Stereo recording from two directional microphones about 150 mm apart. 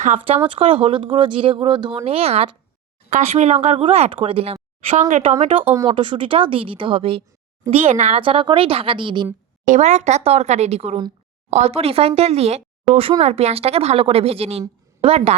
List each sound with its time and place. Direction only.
0.3 s speech: 35° right (ahead or behind)
4.9 s speech: 55° right (ahead or behind)
5.9 s speech: 35° right (ahead or behind)
8.2 s speech: 35° right (ahead or behind)
9.6 s speech: 50° right (ahead or behind)